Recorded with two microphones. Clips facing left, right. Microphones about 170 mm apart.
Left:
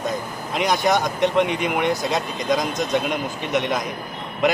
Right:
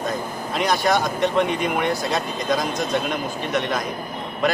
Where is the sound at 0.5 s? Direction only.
20° left (ahead or behind).